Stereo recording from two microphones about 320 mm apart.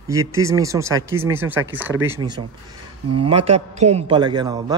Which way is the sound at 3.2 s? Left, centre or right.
Centre.